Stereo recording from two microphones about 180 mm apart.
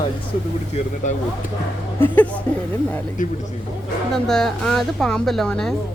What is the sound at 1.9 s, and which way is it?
Speech, 10° left (ahead or behind).